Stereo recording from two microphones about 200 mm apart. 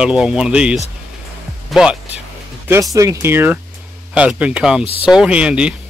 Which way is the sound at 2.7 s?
15° right (ahead or behind).